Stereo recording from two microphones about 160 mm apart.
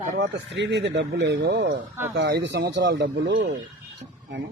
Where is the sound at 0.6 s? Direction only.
90° right.